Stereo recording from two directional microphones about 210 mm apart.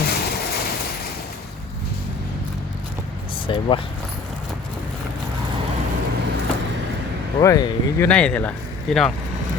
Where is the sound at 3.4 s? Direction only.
25° left (ahead or behind).